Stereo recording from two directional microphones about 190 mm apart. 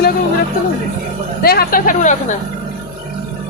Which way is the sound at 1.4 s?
50° left (ahead or behind).